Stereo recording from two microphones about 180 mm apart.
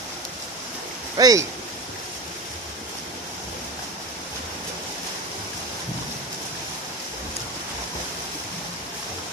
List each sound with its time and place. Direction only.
1.1 s speech: 20° right (ahead or behind)